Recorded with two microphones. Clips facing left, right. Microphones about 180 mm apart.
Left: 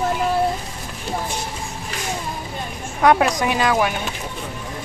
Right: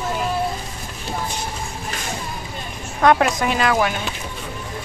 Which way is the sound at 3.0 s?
10° left (ahead or behind).